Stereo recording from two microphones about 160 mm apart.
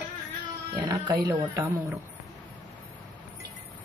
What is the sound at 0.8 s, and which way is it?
Speech, 25° right (ahead or behind).